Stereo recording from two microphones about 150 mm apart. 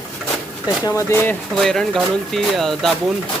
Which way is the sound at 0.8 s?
15° left (ahead or behind).